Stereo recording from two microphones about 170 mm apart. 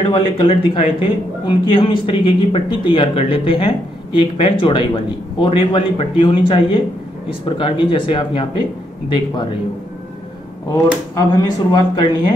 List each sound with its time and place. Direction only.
0.0 s speech: 30° left (ahead or behind)
10.7 s speech: 25° left (ahead or behind)